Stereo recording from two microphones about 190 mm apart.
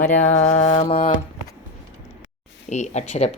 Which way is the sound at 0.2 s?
35° left (ahead or behind).